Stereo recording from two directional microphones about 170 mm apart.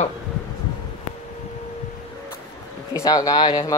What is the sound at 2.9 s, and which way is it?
Speech, 20° left (ahead or behind).